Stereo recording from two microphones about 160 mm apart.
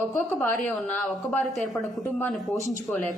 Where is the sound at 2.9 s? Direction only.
10° left (ahead or behind).